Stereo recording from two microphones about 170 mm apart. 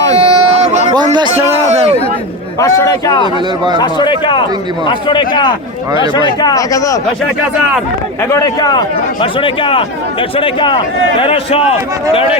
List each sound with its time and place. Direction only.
0.2 s a sound: 35° right (ahead or behind)
0.9 s a man's voice: 25° right (ahead or behind)
2.6 s speech: 20° left (ahead or behind)
8.3 s speech: 20° left (ahead or behind)